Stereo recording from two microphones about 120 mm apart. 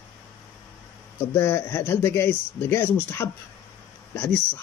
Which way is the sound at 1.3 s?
20° left (ahead or behind).